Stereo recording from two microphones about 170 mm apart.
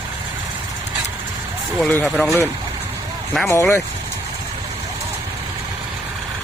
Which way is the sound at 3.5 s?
15° left (ahead or behind).